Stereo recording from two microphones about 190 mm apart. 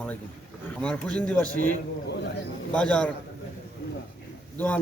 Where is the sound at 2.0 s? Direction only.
65° left (ahead or behind).